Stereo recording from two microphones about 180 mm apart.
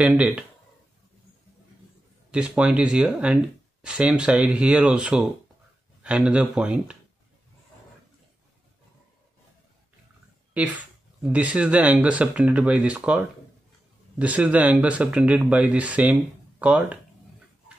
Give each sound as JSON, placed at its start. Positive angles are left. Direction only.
{"t": 0.0, "sound": "speech", "side_deg": -5}
{"t": 2.3, "sound": "speech", "side_deg": -5}
{"t": 10.5, "sound": "speech", "side_deg": -5}